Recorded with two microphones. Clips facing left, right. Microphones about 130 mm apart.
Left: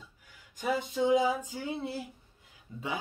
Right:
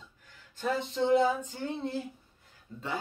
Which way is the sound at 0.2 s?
10° left (ahead or behind).